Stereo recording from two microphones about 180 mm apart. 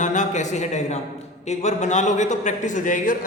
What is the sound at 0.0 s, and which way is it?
A man's voice, 40° left (ahead or behind).